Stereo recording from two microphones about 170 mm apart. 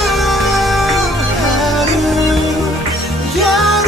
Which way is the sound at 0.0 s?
Centre (ahead or behind).